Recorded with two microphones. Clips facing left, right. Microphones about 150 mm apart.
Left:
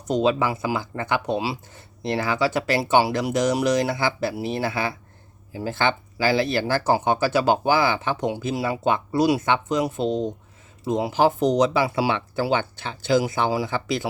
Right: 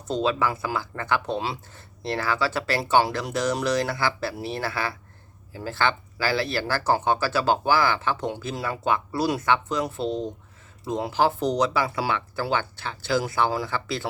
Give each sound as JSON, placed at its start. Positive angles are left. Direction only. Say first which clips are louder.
{"t": 0.1, "sound": "speech", "louder": "left 3 dB", "side_deg": 15}
{"t": 1.4, "sound": "speech", "louder": "left 3 dB", "side_deg": 5}
{"t": 2.0, "sound": "speech", "louder": "left 3 dB", "side_deg": 15}